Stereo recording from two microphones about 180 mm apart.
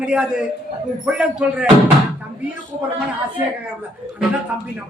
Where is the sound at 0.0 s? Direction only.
5° right (ahead or behind).